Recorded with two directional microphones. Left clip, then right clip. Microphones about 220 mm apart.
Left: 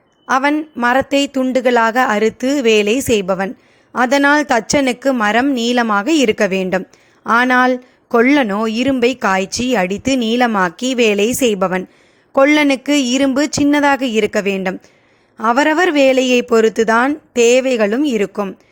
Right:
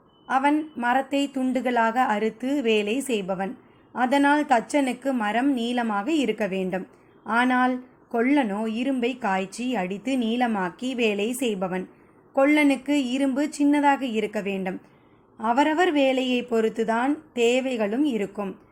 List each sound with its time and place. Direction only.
0.3 s speech: 45° left (ahead or behind)